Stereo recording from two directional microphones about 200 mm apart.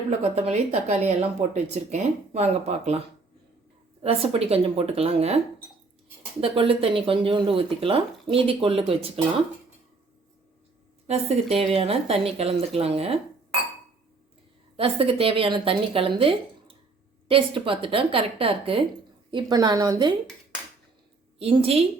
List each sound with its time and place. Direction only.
0.1 s a woman's voice: 30° right (ahead or behind)
4.0 s speech: 30° right (ahead or behind)
6.4 s speech: 25° right (ahead or behind)
11.1 s speech: 30° right (ahead or behind)
14.8 s speech: 30° right (ahead or behind)
21.3 s speech: 30° right (ahead or behind)